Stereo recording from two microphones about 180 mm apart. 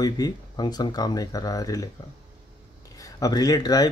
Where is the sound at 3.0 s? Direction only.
20° left (ahead or behind).